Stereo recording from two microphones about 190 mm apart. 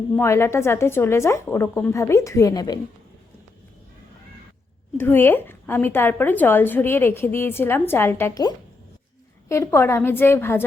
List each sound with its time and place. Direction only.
0.2 s a woman's voice: 15° left (ahead or behind)
4.9 s a woman's voice: 10° left (ahead or behind)